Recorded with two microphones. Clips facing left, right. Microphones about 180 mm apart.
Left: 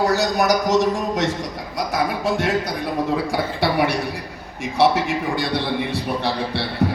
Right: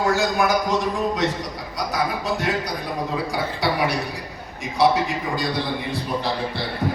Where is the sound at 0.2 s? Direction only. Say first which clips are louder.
Left 2 dB; 40° left (ahead or behind).